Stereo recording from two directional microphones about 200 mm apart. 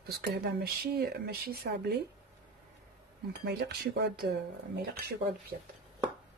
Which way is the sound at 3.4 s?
55° right (ahead or behind).